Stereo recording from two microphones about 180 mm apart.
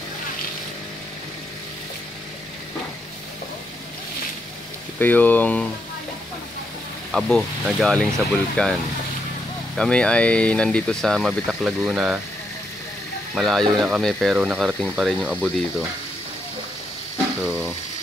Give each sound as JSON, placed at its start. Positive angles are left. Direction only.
{"t": 4.9, "sound": "speech", "side_deg": 10}
{"t": 7.1, "sound": "speech", "side_deg": 0}
{"t": 9.8, "sound": "speech", "side_deg": 5}
{"t": 13.3, "sound": "speech", "side_deg": 0}
{"t": 17.4, "sound": "speech", "side_deg": -10}